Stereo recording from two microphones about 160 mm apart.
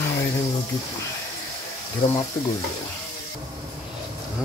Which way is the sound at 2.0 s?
35° left (ahead or behind).